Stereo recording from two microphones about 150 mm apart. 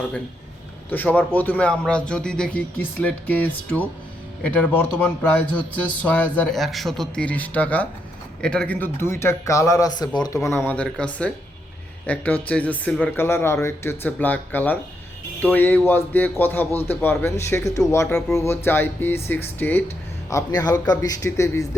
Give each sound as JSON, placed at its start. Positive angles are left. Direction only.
{"t": 0.9, "sound": "a man's voice", "side_deg": 10}
{"t": 10.7, "sound": "a man's voice", "side_deg": 5}